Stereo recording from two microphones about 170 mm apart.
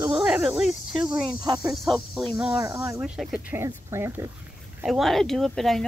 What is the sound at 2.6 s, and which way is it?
Speech, 20° right (ahead or behind).